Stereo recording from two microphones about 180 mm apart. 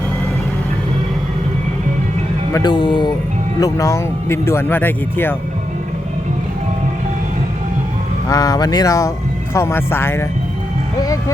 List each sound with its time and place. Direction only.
2.5 s speech: 20° left (ahead or behind)
8.3 s speech: 20° left (ahead or behind)